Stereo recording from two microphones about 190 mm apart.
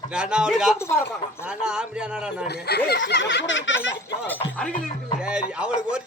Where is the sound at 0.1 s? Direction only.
5° right (ahead or behind).